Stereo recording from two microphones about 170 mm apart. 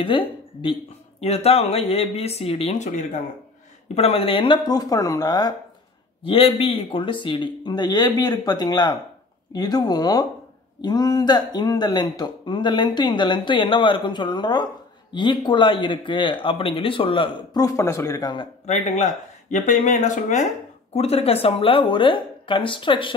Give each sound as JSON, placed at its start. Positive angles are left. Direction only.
{"t": 0.0, "sound": "a woman's voice", "side_deg": 30}
{"t": 6.2, "sound": "speech", "side_deg": 35}
{"t": 19.5, "sound": "speech", "side_deg": 45}
{"t": 20.9, "sound": "a woman's voice", "side_deg": 35}